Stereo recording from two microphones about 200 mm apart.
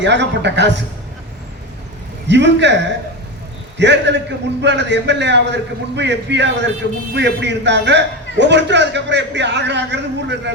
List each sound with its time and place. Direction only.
0.0 s a man's voice: 60° right (ahead or behind)
2.2 s a man's voice: 60° right (ahead or behind)
3.8 s a man's voice: 60° right (ahead or behind)